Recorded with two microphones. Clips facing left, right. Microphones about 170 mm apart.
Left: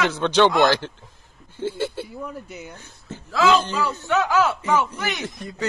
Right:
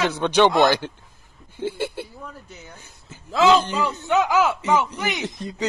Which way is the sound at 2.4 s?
10° left (ahead or behind).